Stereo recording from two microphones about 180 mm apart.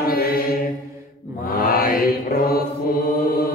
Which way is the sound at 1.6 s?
55° left (ahead or behind).